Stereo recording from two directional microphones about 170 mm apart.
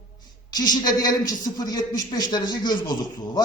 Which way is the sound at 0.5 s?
25° left (ahead or behind).